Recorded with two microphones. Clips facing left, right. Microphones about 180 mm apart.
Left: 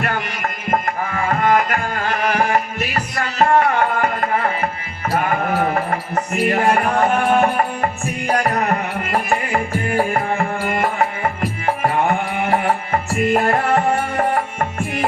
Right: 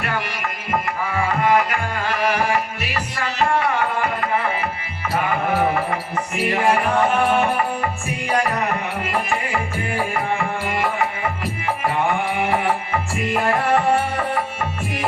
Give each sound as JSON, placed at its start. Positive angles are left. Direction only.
{"t": 0.0, "sound": "music", "side_deg": 45}